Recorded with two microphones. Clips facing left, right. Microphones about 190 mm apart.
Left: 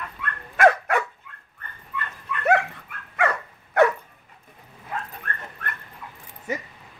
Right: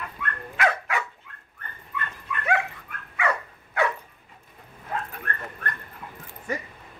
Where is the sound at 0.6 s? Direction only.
50° left (ahead or behind).